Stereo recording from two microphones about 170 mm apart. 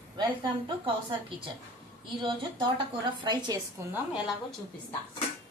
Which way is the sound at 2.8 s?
25° right (ahead or behind).